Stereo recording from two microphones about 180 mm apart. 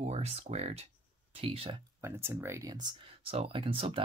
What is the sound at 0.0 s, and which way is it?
Speech, 35° right (ahead or behind).